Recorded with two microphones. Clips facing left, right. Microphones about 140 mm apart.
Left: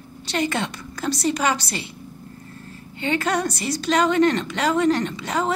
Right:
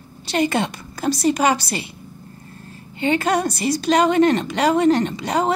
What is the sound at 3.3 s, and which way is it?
A woman's voice, 10° right (ahead or behind).